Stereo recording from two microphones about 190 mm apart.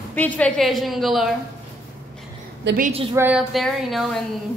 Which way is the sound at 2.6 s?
50° right (ahead or behind).